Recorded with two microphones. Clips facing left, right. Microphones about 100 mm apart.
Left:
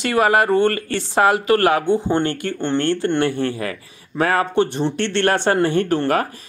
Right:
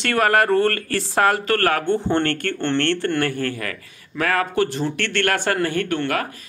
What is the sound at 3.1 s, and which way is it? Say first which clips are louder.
A man's voice: left 3 dB; 25° left (ahead or behind).